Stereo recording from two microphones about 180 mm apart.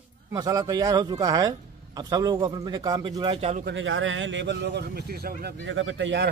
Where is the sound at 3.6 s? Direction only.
90° right.